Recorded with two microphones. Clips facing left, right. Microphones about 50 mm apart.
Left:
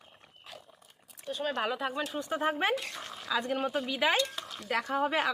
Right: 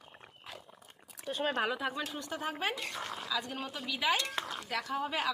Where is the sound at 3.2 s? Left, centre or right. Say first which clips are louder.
Left 10 dB; left.